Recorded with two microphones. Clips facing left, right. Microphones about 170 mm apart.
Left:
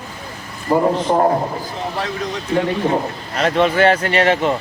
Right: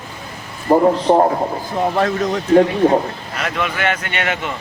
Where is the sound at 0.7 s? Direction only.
25° right (ahead or behind).